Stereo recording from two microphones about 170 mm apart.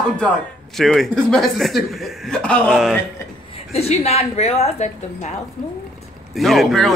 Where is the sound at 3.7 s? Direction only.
40° left (ahead or behind).